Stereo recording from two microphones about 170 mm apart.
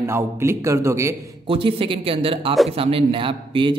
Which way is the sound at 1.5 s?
30° right (ahead or behind).